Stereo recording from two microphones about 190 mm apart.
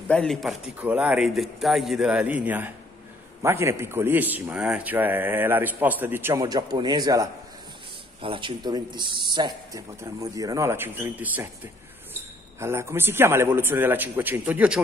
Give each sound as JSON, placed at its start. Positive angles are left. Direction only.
{"t": 0.1, "sound": "a man's voice", "side_deg": 5}